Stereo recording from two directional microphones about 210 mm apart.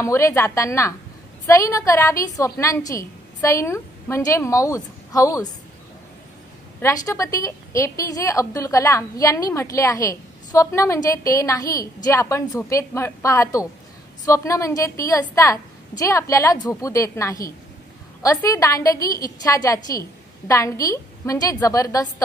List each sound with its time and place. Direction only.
0.0 s a woman's voice: 15° left (ahead or behind)
6.8 s a woman's voice: 15° left (ahead or behind)